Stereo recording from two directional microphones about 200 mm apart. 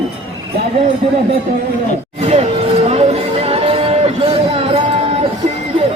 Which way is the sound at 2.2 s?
30° right (ahead or behind).